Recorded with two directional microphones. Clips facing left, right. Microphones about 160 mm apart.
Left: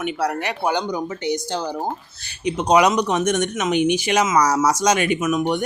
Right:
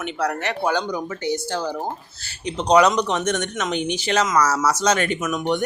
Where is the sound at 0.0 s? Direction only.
10° left (ahead or behind).